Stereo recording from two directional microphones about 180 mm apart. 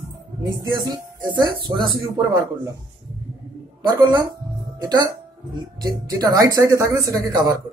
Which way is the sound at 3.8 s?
25° right (ahead or behind).